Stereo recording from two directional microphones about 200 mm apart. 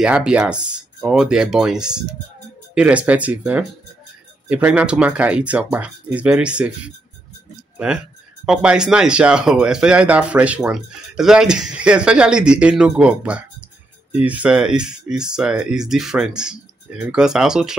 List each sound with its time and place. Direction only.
0.0 s speech: 5° right (ahead or behind)
7.7 s a sound: 5° right (ahead or behind)
8.5 s speech: 5° right (ahead or behind)